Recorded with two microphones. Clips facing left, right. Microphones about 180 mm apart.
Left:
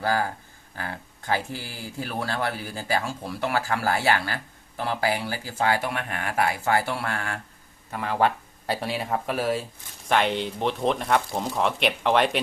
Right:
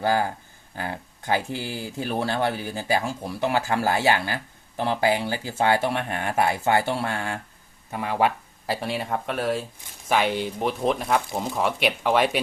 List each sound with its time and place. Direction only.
0.0 s speech: 20° right (ahead or behind)
8.6 s speech: centre (ahead or behind)